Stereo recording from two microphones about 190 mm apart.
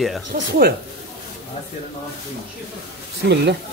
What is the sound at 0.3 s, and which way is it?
Speech, 50° right (ahead or behind).